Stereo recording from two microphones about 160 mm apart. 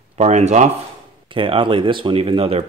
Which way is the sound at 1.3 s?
30° right (ahead or behind).